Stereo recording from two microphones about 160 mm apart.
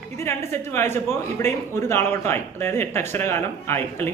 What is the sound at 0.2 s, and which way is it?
Speech, 15° left (ahead or behind).